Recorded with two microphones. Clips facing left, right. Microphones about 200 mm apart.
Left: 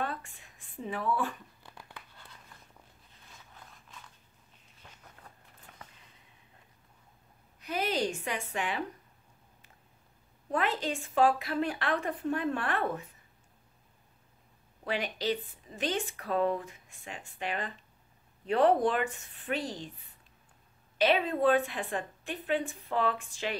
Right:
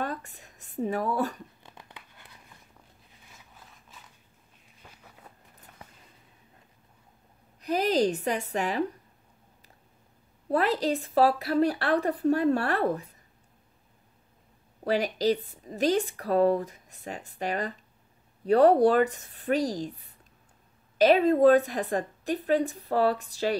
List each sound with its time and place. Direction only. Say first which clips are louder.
0.0 s speech: right 3 dB; 40° right (ahead or behind)
1.6 s crumpling: right 1 dB; 20° right (ahead or behind)
4.8 s a sound: right 2 dB; 5° right (ahead or behind)
7.6 s speech: right 7 dB; 40° right (ahead or behind)
10.5 s speech: right 6 dB; 35° right (ahead or behind)
14.9 s speech: right 7 dB; 40° right (ahead or behind)